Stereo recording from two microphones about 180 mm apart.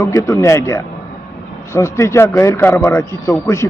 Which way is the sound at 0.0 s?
20° left (ahead or behind).